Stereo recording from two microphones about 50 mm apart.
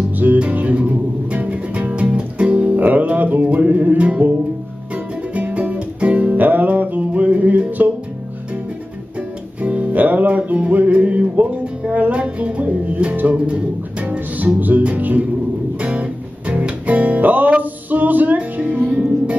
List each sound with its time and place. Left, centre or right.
0.2 s music: right
5.3 s music: right
9.6 s music: right